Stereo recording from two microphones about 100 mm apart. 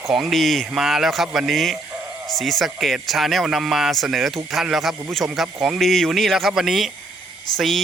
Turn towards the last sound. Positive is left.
turn(degrees=5)  # may be behind; listen again after turning